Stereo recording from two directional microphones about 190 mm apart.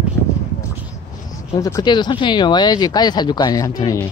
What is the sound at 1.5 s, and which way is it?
Speech, 15° left (ahead or behind).